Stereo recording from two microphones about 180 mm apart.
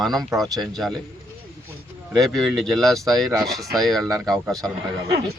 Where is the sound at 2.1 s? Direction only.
Centre (ahead or behind).